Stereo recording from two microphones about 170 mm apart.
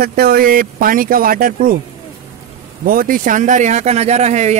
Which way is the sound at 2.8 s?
55° right (ahead or behind).